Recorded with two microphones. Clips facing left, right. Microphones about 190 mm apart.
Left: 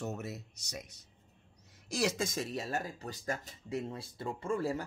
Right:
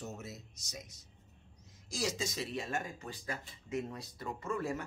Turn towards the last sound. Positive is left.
turn(degrees=30)  # may be behind; listen again after turning